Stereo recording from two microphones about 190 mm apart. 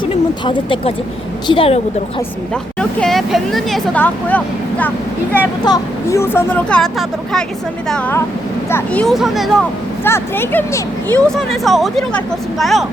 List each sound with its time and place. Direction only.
0.0 s a woman's voice: 25° left (ahead or behind)
2.5 s speech: 5° left (ahead or behind)
10.0 s speech: 10° left (ahead or behind)
11.3 s speech: centre (ahead or behind)